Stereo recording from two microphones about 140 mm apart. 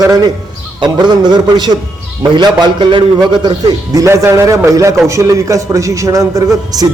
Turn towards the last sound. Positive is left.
turn(degrees=-25)  # may be behind; listen again after turning